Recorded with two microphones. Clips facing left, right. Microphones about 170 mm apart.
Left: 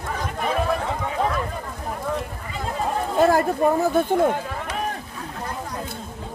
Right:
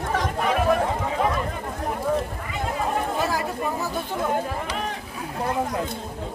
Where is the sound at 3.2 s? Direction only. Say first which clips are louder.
Left 8 dB; 50° left (ahead or behind).